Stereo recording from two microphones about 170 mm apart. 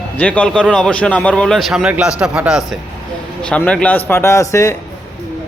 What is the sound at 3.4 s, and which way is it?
A man's voice, 5° left (ahead or behind).